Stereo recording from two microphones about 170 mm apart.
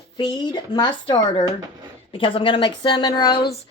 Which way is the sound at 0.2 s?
25° left (ahead or behind).